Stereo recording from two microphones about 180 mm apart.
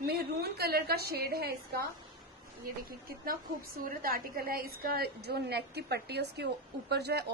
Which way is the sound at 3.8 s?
55° right (ahead or behind).